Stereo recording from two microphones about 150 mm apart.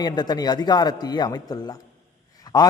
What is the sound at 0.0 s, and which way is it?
A man's voice, 25° left (ahead or behind).